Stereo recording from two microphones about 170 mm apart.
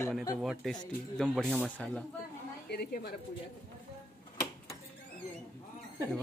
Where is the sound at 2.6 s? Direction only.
70° left (ahead or behind).